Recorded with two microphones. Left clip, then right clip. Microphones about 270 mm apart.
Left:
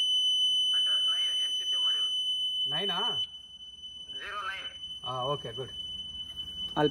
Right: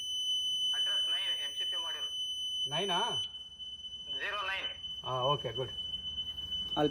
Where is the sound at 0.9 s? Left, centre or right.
Right.